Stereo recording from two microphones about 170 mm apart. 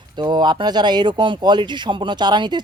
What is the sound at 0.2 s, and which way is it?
Speech, 25° right (ahead or behind).